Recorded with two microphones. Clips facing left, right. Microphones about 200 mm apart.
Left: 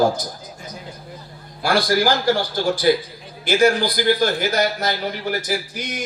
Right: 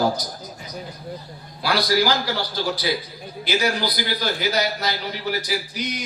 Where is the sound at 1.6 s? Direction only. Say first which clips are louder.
Left 2 dB; 50° left (ahead or behind).